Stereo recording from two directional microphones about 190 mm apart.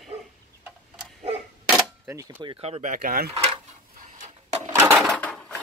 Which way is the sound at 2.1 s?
15° right (ahead or behind).